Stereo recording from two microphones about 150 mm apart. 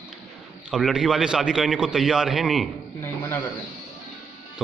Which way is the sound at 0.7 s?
5° right (ahead or behind).